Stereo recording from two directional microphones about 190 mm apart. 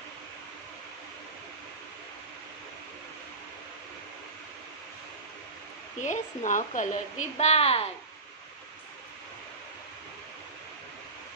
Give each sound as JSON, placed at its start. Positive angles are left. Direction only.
{"t": 5.9, "sound": "speech", "side_deg": 40}